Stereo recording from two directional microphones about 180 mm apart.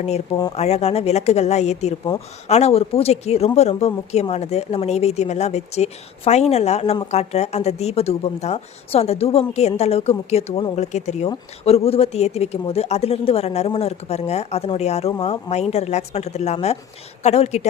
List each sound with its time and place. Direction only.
0.5 s speech: 35° left (ahead or behind)